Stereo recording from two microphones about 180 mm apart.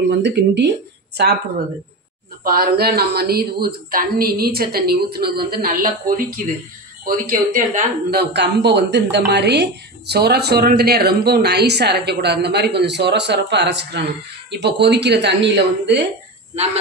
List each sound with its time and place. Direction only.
0.1 s speech: 70° right (ahead or behind)
2.4 s a woman's voice: 55° right (ahead or behind); by 16.0 s 70° right (ahead or behind)